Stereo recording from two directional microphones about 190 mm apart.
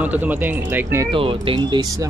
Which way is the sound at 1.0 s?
30° right (ahead or behind).